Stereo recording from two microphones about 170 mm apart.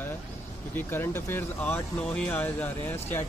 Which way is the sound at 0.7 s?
15° left (ahead or behind).